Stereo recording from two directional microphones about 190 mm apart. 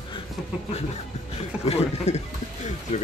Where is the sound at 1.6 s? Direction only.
35° left (ahead or behind).